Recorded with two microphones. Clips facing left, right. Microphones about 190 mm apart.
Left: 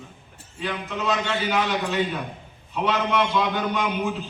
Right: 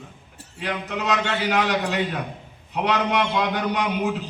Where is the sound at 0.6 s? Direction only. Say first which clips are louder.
Right 1 dB; 70° right (ahead or behind).